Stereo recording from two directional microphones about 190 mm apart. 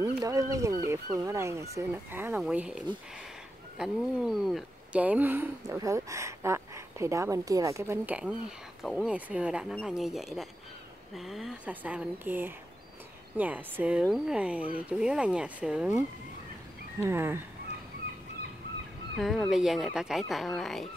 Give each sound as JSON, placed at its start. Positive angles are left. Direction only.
{"t": 0.0, "sound": "speech", "side_deg": -15}
{"t": 17.0, "sound": "speech", "side_deg": -10}
{"t": 19.1, "sound": "speech", "side_deg": 0}